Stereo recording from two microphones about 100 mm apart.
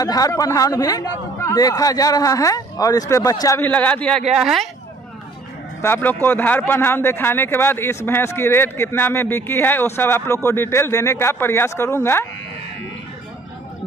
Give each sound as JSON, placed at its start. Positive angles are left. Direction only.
{"t": 0.0, "sound": "a man's voice", "side_deg": 35}
{"t": 3.6, "sound": "speech", "side_deg": 15}
{"t": 4.3, "sound": "speech", "side_deg": -5}
{"t": 5.8, "sound": "a man's voice", "side_deg": 25}